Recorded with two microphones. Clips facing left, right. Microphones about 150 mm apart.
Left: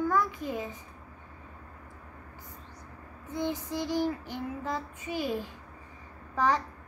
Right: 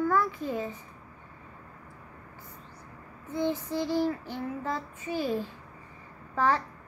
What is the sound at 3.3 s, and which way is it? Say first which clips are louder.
Child singing: right 3 dB; 15° left (ahead or behind).